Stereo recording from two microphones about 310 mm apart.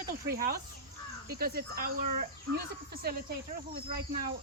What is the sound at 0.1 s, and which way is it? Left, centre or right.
Speech, right.